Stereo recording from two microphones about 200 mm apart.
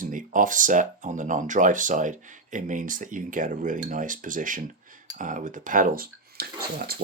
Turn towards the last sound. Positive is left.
turn(degrees=-50)  # may be behind; listen again after turning